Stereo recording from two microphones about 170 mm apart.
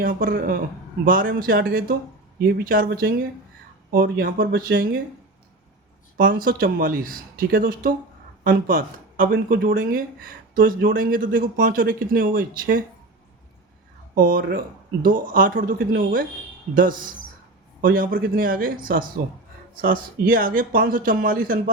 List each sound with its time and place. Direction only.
0.0 s speech: 55° right (ahead or behind)
6.1 s speech: 55° right (ahead or behind)
14.2 s speech: 55° right (ahead or behind)